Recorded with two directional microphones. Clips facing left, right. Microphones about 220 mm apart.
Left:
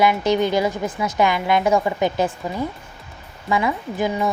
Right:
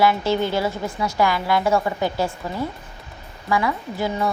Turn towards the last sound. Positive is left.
turn(degrees=15)  # may be behind; listen again after turning